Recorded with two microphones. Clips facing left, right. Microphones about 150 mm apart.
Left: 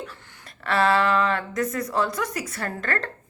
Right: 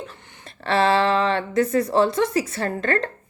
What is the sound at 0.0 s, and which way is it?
A woman's voice, 25° right (ahead or behind).